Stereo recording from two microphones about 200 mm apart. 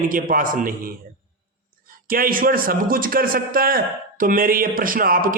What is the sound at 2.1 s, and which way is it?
A man's voice, 45° right (ahead or behind).